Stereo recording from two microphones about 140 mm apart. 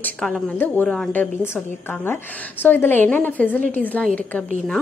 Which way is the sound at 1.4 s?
15° left (ahead or behind).